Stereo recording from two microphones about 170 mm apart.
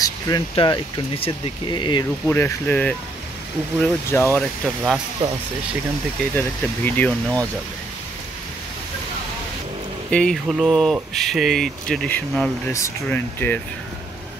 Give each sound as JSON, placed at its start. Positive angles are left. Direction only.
{"t": 0.0, "sound": "speech", "side_deg": 25}
{"t": 2.2, "sound": "speech", "side_deg": 15}
{"t": 4.4, "sound": "speech", "side_deg": 0}
{"t": 6.3, "sound": "speech", "side_deg": 10}
{"t": 10.1, "sound": "speech", "side_deg": 5}